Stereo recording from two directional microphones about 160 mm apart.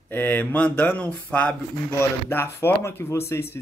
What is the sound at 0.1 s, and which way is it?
Speech, 10° left (ahead or behind).